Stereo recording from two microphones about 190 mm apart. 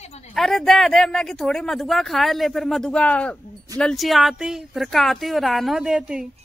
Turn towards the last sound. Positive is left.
turn(degrees=-5)  # may be behind; listen again after turning